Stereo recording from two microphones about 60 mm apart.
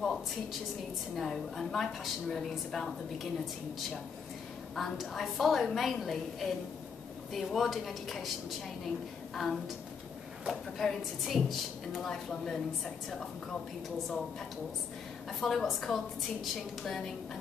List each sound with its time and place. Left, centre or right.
0.0 s a woman's voice: centre
4.7 s a woman's voice: centre
10.8 s a woman's voice: centre
13.8 s a woman's voice: centre
15.4 s a woman's voice: centre